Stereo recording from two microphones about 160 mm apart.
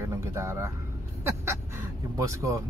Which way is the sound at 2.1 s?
20° right (ahead or behind).